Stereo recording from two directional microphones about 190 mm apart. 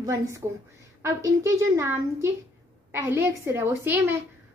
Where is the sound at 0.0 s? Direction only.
15° right (ahead or behind).